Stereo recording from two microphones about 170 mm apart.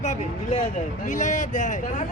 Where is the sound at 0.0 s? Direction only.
45° left (ahead or behind).